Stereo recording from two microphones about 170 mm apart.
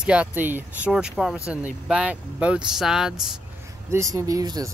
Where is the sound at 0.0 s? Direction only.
5° right (ahead or behind).